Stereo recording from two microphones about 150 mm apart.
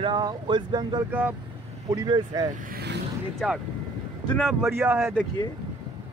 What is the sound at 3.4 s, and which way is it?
Speech, centre (ahead or behind).